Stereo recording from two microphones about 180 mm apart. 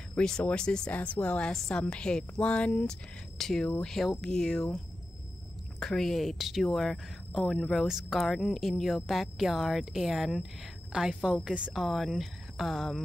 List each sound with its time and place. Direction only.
0.1 s a woman's voice: 5° left (ahead or behind)
5.8 s a woman's voice: centre (ahead or behind)